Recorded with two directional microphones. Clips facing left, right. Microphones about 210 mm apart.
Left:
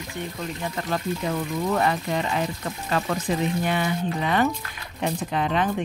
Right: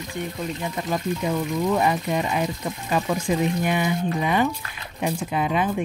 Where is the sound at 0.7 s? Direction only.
15° right (ahead or behind).